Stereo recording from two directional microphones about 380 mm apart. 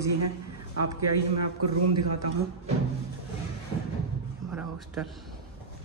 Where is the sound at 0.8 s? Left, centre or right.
Right.